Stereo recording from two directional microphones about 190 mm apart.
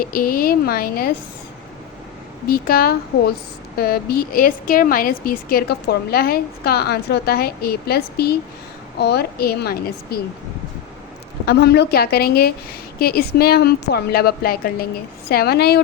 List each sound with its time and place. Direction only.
0.0 s a woman's voice: 50° left (ahead or behind)
2.5 s a woman's voice: 50° left (ahead or behind)
11.4 s a woman's voice: 60° left (ahead or behind)